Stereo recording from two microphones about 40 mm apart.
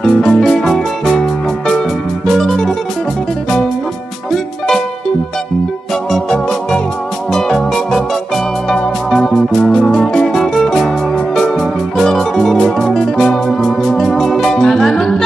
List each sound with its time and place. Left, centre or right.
0.0 s music: centre
2.2 s music: centre
6.1 s music: centre
9.8 s music: left
10.3 s music: centre
12.0 s music: centre